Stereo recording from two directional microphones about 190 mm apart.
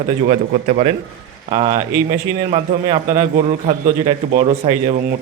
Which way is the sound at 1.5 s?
25° right (ahead or behind).